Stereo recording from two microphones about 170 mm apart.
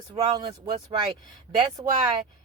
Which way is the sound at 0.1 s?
25° right (ahead or behind).